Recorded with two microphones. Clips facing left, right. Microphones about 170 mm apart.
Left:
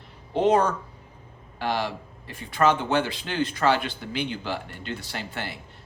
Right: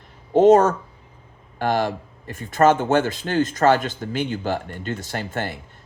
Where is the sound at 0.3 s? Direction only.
45° right (ahead or behind).